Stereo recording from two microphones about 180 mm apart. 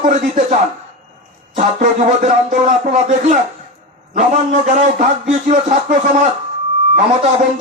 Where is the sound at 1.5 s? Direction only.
45° right (ahead or behind).